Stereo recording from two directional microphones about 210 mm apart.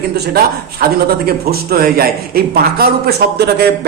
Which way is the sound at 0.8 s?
45° right (ahead or behind).